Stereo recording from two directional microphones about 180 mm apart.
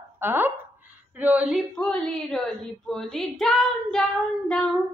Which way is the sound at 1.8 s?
5° left (ahead or behind).